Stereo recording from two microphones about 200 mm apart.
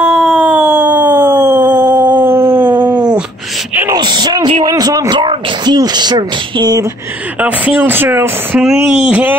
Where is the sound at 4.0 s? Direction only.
20° right (ahead or behind).